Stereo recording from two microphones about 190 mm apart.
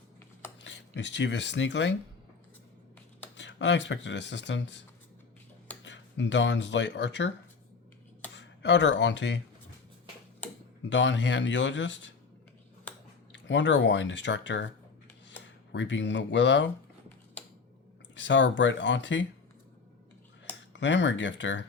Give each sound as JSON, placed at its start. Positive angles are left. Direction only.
{"t": 0.6, "sound": "speech", "side_deg": 70}
{"t": 3.3, "sound": "speech", "side_deg": 70}
{"t": 8.4, "sound": "speech", "side_deg": 70}
{"t": 10.8, "sound": "speech", "side_deg": 70}
{"t": 12.9, "sound": "clicking", "side_deg": 10}
{"t": 13.3, "sound": "speech", "side_deg": 70}
{"t": 18.1, "sound": "speech", "side_deg": 75}
{"t": 20.7, "sound": "speech", "side_deg": 70}